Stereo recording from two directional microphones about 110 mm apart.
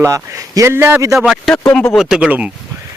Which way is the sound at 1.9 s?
5° right (ahead or behind).